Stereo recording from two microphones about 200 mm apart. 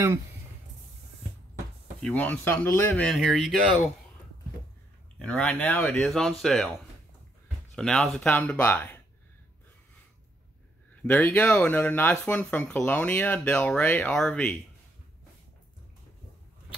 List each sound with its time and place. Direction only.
2.0 s speech: 5° left (ahead or behind)
5.2 s speech: 5° left (ahead or behind)
7.7 s speech: 5° left (ahead or behind)
11.0 s speech: 10° left (ahead or behind)